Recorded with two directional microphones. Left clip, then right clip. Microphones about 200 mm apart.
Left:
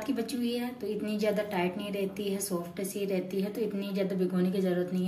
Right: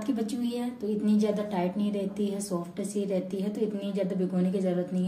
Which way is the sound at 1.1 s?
40° right (ahead or behind).